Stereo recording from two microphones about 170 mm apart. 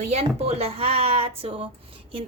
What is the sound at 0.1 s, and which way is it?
A woman's voice, 40° right (ahead or behind).